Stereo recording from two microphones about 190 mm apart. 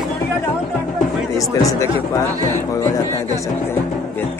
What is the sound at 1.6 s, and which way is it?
Speech, 15° left (ahead or behind).